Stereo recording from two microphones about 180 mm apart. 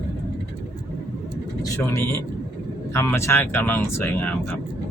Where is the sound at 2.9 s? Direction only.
15° left (ahead or behind).